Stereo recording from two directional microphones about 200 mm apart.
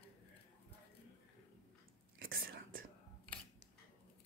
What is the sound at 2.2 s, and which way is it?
Whispering, 45° right (ahead or behind).